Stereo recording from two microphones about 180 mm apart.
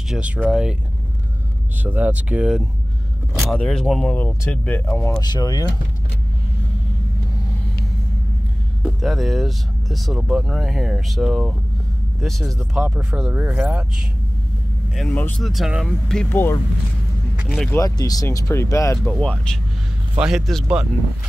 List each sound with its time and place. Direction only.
0.1 s speech: 5° right (ahead or behind)
1.8 s speech: 10° right (ahead or behind); by 5.7 s 20° left (ahead or behind)
9.0 s speech: centre (ahead or behind)
15.0 s speech: 10° left (ahead or behind)
17.4 s vehicle: centre (ahead or behind)
17.6 s speech: 20° left (ahead or behind)
19.1 s speech: 5° left (ahead or behind)